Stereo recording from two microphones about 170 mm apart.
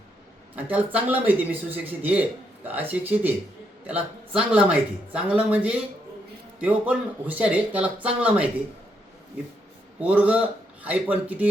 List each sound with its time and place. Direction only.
0.5 s speech: 10° right (ahead or behind)
10.0 s speech: 10° right (ahead or behind)